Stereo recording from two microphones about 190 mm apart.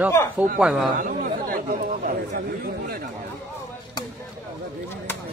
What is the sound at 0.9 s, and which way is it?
Chatter, 45° right (ahead or behind).